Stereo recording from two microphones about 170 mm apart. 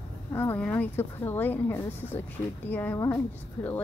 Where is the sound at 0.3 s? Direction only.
15° left (ahead or behind).